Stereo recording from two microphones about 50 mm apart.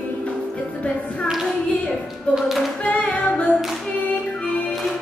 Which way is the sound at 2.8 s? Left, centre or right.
Left.